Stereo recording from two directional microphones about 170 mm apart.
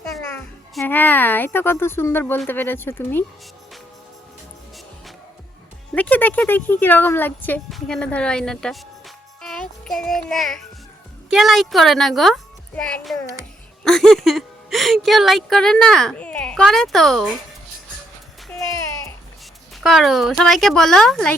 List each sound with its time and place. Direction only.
0.0 s music: centre (ahead or behind)
0.9 s speech: 10° left (ahead or behind)
5.9 s a woman's voice: 10° left (ahead or behind)
19.7 s a woman's voice: centre (ahead or behind)